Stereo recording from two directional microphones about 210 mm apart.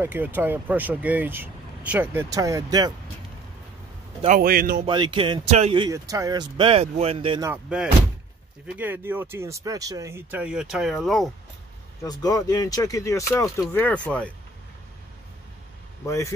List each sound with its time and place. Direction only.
0.0 s speech: 10° right (ahead or behind)
4.4 s speech: 45° right (ahead or behind)
4.8 s speech: 20° right (ahead or behind)
7.4 s speech: 5° right (ahead or behind)
12.0 s speech: 15° left (ahead or behind)